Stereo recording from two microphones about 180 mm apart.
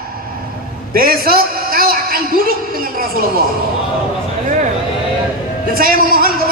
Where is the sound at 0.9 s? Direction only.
55° right (ahead or behind).